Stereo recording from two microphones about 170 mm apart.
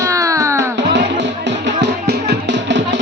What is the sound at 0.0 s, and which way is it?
Music, 20° right (ahead or behind).